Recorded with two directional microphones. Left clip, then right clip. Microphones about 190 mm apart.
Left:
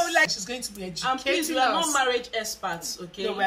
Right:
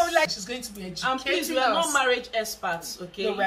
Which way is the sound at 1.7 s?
Centre (ahead or behind).